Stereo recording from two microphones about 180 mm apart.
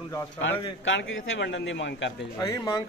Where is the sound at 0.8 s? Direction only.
90° left.